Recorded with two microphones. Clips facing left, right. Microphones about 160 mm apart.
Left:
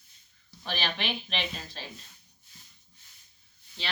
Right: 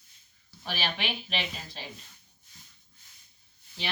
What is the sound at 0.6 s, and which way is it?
Speech, 10° right (ahead or behind).